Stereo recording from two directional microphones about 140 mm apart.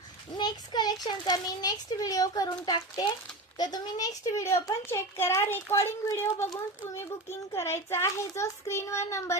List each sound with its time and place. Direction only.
0.3 s a child's voice: 30° left (ahead or behind)